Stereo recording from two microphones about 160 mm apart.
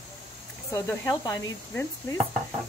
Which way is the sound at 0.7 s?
15° left (ahead or behind).